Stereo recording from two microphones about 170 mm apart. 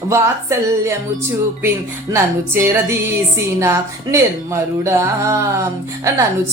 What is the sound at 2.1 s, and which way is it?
Speech, 15° right (ahead or behind).